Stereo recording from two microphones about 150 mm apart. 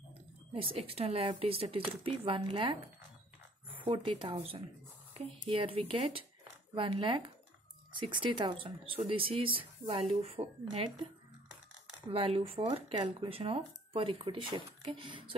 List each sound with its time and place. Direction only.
0.8 s speech: 40° right (ahead or behind)
3.8 s a woman's voice: 35° right (ahead or behind)
12.1 s speech: 40° right (ahead or behind)